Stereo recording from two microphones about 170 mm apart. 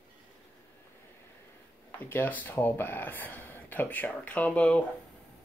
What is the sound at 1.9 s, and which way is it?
Speech, 10° left (ahead or behind).